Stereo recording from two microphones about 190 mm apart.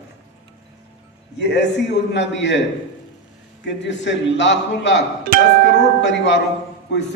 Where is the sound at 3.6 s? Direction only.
70° left (ahead or behind).